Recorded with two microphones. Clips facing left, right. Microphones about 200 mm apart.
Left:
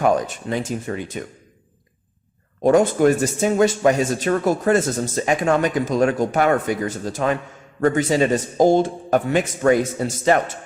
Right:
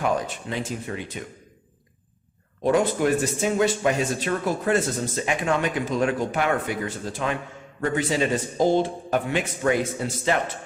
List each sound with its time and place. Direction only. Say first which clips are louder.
0.0 s speech: left 6 dB; 45° left (ahead or behind)
2.6 s speech: left 6 dB; 45° left (ahead or behind)